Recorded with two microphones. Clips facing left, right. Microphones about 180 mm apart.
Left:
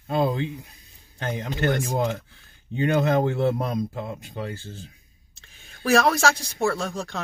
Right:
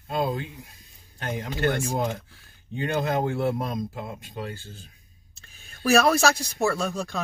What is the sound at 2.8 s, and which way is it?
Speech, 20° left (ahead or behind).